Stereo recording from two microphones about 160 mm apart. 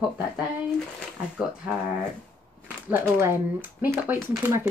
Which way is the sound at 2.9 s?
15° right (ahead or behind).